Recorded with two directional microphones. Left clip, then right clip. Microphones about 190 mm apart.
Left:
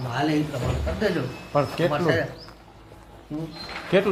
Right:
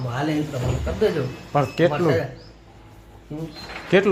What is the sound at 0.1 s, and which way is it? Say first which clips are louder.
Speech: left 1 dB; centre (ahead or behind).